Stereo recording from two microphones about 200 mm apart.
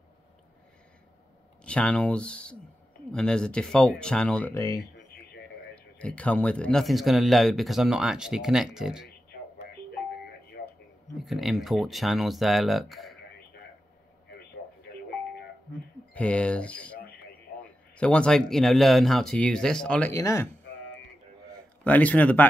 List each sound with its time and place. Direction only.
1.6 s speech: 5° left (ahead or behind)
4.6 s speech: 20° left (ahead or behind)
5.9 s speech: 5° left (ahead or behind)
10.6 s a sound: 55° left (ahead or behind)
11.1 s speech: centre (ahead or behind)
16.1 s speech: 5° left (ahead or behind)
17.9 s speech: 5° left (ahead or behind)
21.8 s speech: 5° left (ahead or behind)